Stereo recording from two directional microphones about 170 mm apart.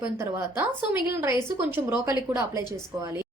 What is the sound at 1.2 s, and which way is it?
A woman's voice, 15° right (ahead or behind).